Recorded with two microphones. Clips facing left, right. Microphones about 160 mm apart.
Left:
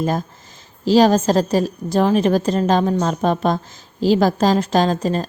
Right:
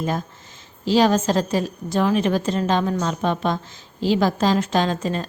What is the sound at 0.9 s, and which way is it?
A woman's voice, 40° left (ahead or behind).